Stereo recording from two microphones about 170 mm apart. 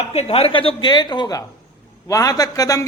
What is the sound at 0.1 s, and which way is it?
A man's voice, 35° left (ahead or behind).